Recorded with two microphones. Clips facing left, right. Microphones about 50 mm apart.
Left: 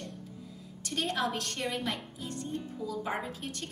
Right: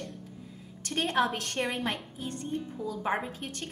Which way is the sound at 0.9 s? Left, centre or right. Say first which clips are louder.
Right 4 dB; right.